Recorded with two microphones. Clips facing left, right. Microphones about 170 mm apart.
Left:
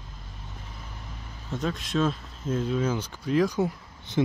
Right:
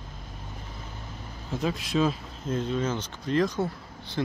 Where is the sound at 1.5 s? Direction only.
Centre (ahead or behind).